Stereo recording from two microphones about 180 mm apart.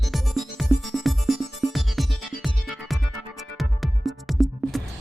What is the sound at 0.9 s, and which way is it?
Music, centre (ahead or behind).